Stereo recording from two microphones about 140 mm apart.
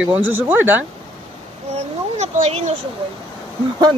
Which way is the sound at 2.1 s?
55° right (ahead or behind).